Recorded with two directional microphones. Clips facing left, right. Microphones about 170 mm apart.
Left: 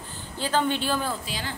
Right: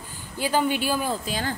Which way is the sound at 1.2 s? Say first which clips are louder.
Right 6 dB; 45° right (ahead or behind).